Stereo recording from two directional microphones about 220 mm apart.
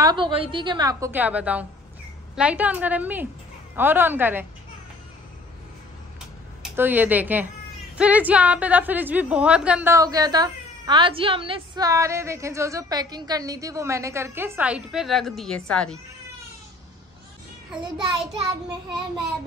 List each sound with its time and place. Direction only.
0.0 s a woman's voice: 20° right (ahead or behind)
6.6 s a woman's voice: 10° right (ahead or behind)